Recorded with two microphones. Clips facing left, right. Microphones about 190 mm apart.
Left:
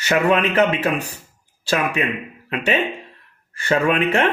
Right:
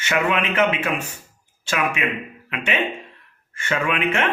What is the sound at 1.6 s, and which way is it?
Speech, 35° left (ahead or behind).